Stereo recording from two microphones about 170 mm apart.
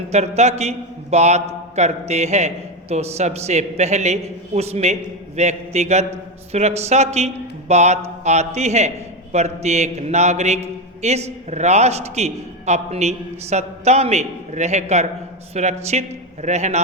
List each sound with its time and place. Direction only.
0.1 s a man's voice: 40° right (ahead or behind)